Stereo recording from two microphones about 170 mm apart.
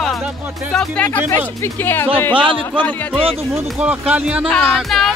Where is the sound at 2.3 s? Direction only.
30° right (ahead or behind).